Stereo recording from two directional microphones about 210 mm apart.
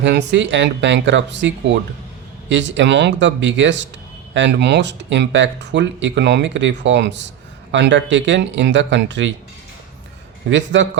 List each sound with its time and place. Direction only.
0.0 s speech: 55° right (ahead or behind)
10.5 s speech: 60° right (ahead or behind)